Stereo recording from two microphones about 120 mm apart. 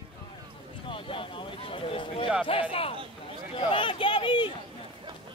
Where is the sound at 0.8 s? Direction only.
45° left (ahead or behind).